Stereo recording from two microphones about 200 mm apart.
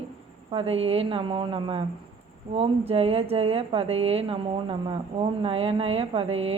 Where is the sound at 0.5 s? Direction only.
30° right (ahead or behind).